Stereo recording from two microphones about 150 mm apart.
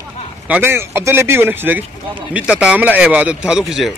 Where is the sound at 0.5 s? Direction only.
15° right (ahead or behind).